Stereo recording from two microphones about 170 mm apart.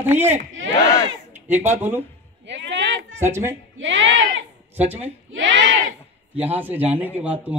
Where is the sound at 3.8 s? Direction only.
90° right.